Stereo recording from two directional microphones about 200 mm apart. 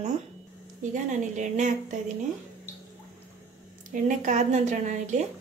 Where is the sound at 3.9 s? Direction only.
40° right (ahead or behind).